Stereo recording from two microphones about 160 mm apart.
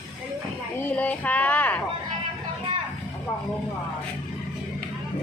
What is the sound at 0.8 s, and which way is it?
Speech, 10° left (ahead or behind).